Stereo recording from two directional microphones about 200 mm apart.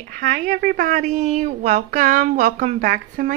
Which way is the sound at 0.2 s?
40° right (ahead or behind).